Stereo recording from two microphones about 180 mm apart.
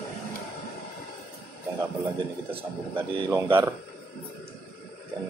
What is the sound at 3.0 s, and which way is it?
Speech, 15° right (ahead or behind).